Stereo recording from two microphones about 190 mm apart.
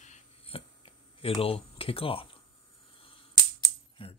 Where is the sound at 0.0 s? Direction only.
35° left (ahead or behind).